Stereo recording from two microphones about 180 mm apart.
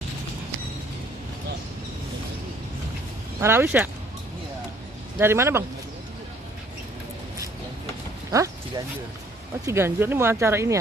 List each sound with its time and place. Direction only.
3.3 s speech: 15° right (ahead or behind)
5.2 s speech: 15° right (ahead or behind)
8.3 s a sound: 20° right (ahead or behind)
9.7 s speech: 15° right (ahead or behind)